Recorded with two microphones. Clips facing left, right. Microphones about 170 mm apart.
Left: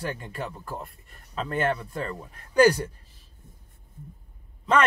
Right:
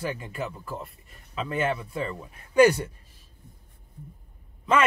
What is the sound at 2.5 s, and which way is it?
Speech, 35° left (ahead or behind).